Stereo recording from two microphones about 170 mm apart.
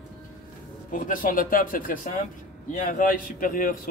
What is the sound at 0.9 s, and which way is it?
Speech, 50° left (ahead or behind).